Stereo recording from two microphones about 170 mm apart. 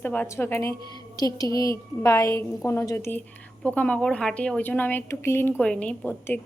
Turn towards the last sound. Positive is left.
turn(degrees=10)  # may be behind; listen again after turning